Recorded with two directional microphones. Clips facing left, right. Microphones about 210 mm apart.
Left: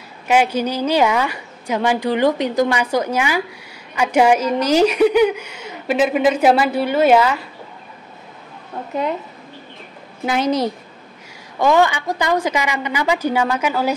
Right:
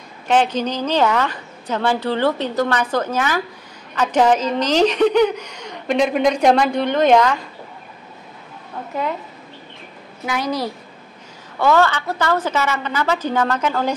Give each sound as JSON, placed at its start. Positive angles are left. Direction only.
{"t": 0.3, "sound": "a woman's voice", "side_deg": 10}
{"t": 10.2, "sound": "a woman's voice", "side_deg": 25}